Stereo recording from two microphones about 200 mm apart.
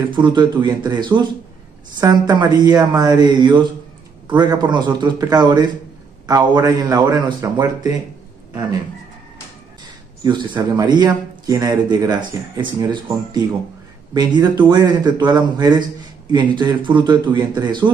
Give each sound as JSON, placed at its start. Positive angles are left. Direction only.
{"t": 0.1, "sound": "a man's voice", "side_deg": -20}
{"t": 10.2, "sound": "a man's voice", "side_deg": -20}